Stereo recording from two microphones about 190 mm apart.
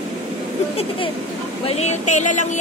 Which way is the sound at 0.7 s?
25° left (ahead or behind).